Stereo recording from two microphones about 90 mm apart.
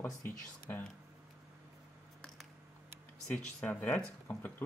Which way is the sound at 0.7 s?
25° left (ahead or behind).